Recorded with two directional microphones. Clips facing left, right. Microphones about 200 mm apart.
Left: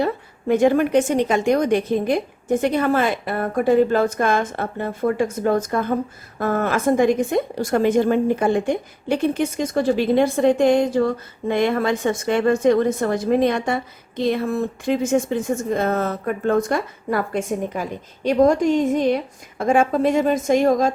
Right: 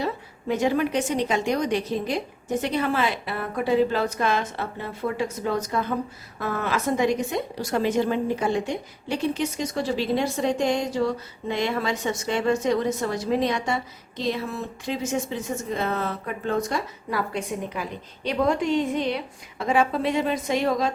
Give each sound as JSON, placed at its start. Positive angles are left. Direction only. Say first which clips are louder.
{"t": 0.0, "sound": "a woman's voice", "louder": "left 6 dB", "side_deg": 55}